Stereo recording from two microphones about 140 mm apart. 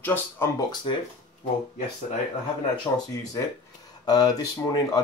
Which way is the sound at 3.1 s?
25° left (ahead or behind).